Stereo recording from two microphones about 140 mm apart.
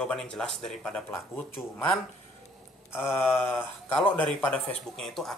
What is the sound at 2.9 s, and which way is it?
Speech, 15° left (ahead or behind).